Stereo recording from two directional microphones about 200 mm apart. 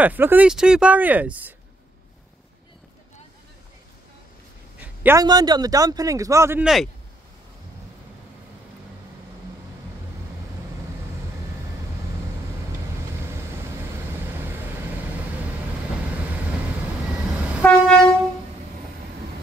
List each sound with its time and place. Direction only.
0.0 s speech: 10° right (ahead or behind)
4.7 s a sound: 10° right (ahead or behind)
5.2 s speech: 20° right (ahead or behind)
17.4 s train: 5° right (ahead or behind)
17.6 s train: 5° left (ahead or behind)